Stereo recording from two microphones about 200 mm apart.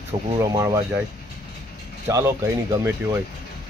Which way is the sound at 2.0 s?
15° right (ahead or behind).